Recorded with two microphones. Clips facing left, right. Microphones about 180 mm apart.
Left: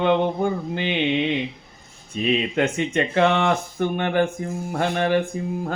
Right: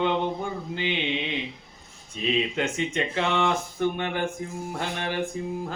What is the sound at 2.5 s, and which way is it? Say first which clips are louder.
Speech: left 5 dB; 60° left (ahead or behind).